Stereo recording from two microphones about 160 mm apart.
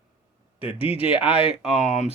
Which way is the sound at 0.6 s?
35° left (ahead or behind).